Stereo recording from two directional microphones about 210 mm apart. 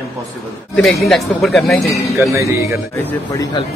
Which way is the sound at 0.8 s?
Centre (ahead or behind).